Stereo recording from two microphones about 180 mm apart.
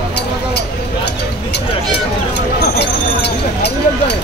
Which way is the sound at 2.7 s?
65° left (ahead or behind).